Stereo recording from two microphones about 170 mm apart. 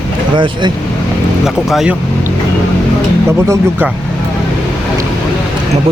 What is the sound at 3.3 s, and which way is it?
Speech, 15° right (ahead or behind).